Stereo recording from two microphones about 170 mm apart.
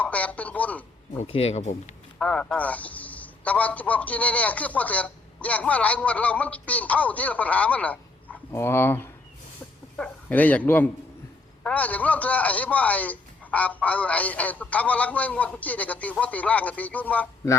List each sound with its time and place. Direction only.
0.0 s speech: 10° left (ahead or behind)
1.2 s speech: 35° left (ahead or behind)
2.1 s a man's voice: 5° left (ahead or behind)